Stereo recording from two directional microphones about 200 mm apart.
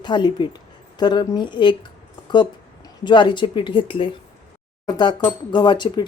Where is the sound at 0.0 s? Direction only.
25° left (ahead or behind).